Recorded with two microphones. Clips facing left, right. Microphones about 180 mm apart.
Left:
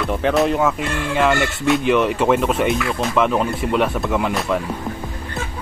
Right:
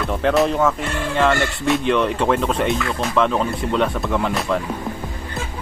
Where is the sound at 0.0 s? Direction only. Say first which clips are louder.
Even; centre (ahead or behind).